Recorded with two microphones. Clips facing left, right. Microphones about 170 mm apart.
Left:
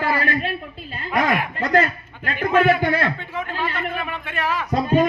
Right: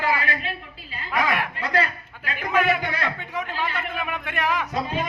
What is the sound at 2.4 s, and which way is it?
Speech, 10° right (ahead or behind).